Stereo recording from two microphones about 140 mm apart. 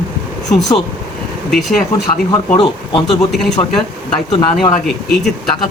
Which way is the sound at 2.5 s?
35° left (ahead or behind).